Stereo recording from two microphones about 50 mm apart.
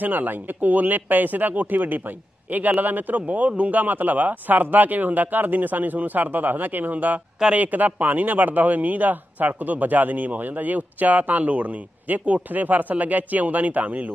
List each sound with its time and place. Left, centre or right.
0.0 s speech: right